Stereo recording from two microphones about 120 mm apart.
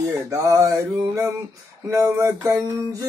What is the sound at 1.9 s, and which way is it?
Cutlery, 25° right (ahead or behind).